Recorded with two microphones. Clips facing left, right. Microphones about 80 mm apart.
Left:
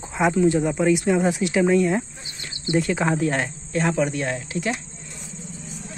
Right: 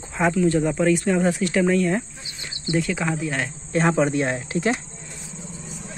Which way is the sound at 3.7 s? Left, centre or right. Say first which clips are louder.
Right 3 dB; right.